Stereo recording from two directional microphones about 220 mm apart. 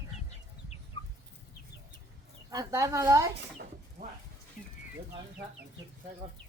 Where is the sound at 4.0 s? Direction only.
40° right (ahead or behind).